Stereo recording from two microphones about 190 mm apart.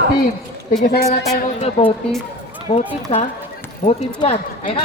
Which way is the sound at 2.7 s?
35° left (ahead or behind).